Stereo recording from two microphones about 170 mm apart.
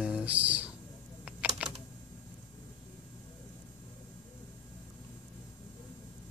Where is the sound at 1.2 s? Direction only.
5° right (ahead or behind).